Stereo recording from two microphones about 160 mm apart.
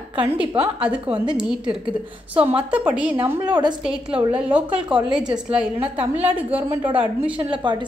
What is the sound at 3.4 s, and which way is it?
Speech, 25° right (ahead or behind).